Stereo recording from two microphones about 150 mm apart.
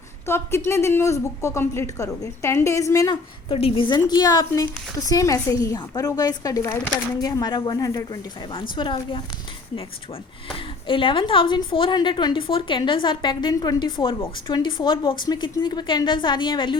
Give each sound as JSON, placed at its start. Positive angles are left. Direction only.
{"t": 0.3, "sound": "speech", "side_deg": 15}
{"t": 3.5, "sound": "a woman's voice", "side_deg": 35}
{"t": 10.5, "sound": "a woman's voice", "side_deg": 35}